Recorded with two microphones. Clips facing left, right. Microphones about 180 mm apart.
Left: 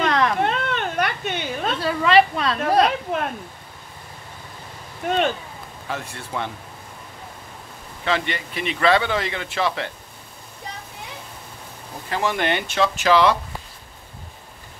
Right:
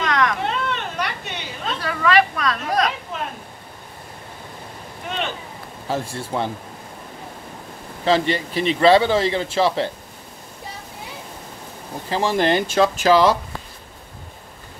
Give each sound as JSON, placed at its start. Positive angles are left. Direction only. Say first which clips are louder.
{"t": 0.0, "sound": "a sound", "louder": "left 1 dB", "side_deg": 30}
{"t": 0.4, "sound": "cat", "louder": "left 2 dB", "side_deg": 55}
{"t": 1.8, "sound": "a woman's voice", "louder": "left 1 dB", "side_deg": 25}
{"t": 3.1, "sound": "speech", "louder": "left 5 dB", "side_deg": 60}
{"t": 5.0, "sound": "speech", "louder": "left 8 dB", "side_deg": 55}
{"t": 5.9, "sound": "a man's voice", "louder": "right 6 dB", "side_deg": -30}
{"t": 8.0, "sound": "a man's voice", "louder": "right 6 dB", "side_deg": -35}
{"t": 12.1, "sound": "a man's voice", "louder": "right 4 dB", "side_deg": -30}